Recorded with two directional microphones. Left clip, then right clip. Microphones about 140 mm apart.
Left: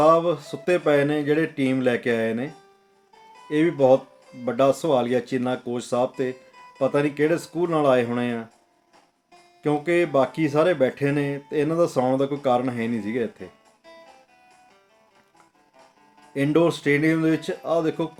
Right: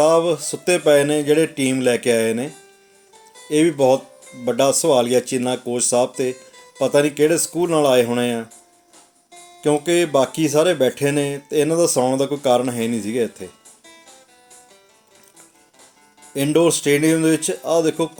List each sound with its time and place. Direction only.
0.0 s speech: 20° right (ahead or behind)
3.5 s speech: 20° right (ahead or behind)
9.6 s speech: 20° right (ahead or behind)
16.3 s speech: 20° right (ahead or behind)